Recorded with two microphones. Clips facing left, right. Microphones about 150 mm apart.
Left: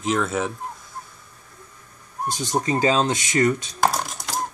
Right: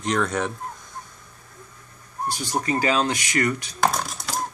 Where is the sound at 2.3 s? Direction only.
20° left (ahead or behind).